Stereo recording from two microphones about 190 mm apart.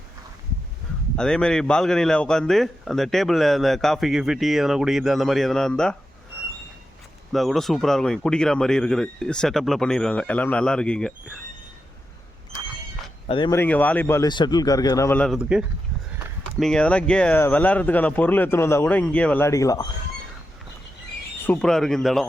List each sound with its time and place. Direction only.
1.1 s a man's voice: 5° left (ahead or behind)
7.3 s a man's voice: centre (ahead or behind)
13.2 s speech: 25° left (ahead or behind)
13.5 s speech: 10° left (ahead or behind)
16.5 s speech: centre (ahead or behind); by 19.9 s 20° left (ahead or behind)
21.4 s a man's voice: 5° left (ahead or behind)